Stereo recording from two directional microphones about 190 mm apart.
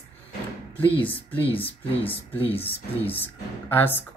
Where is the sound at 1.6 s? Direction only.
30° left (ahead or behind).